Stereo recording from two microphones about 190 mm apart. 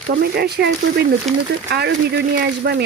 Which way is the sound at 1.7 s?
55° right (ahead or behind).